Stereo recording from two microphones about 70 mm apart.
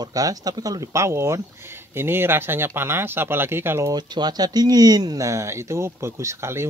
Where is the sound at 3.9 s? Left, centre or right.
Right.